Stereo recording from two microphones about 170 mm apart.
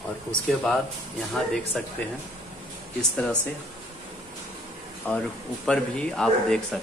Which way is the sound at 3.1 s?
10° left (ahead or behind).